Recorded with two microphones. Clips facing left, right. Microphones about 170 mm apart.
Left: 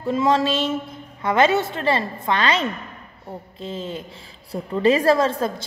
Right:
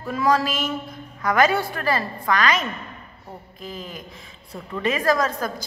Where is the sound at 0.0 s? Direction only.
25° left (ahead or behind).